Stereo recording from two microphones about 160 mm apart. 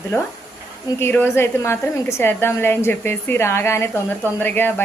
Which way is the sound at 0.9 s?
15° left (ahead or behind).